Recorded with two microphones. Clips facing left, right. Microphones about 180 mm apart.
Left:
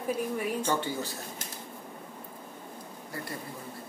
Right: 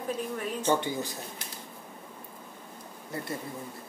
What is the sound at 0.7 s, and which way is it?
Speech, 15° right (ahead or behind).